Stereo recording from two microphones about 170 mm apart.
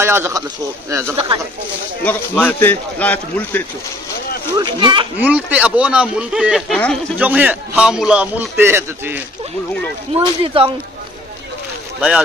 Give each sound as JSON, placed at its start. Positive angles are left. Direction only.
{"t": 0.0, "sound": "a man's voice", "side_deg": -15}
{"t": 2.0, "sound": "a man's voice", "side_deg": 10}
{"t": 4.6, "sound": "a child's voice", "side_deg": -30}
{"t": 5.2, "sound": "a man's voice", "side_deg": -10}
{"t": 10.1, "sound": "speech", "side_deg": -30}